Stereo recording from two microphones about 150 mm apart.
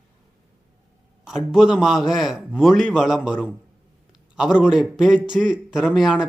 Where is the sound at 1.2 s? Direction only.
5° right (ahead or behind).